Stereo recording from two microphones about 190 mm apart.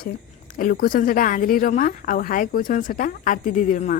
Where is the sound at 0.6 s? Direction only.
50° left (ahead or behind).